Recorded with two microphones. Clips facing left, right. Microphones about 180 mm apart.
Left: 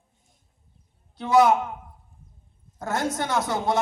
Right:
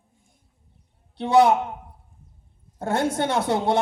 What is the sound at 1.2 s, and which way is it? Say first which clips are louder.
Speech: right 1 dB; 30° right (ahead or behind).